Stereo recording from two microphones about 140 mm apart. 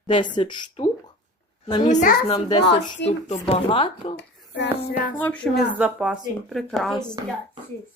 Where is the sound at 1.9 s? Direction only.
60° left (ahead or behind).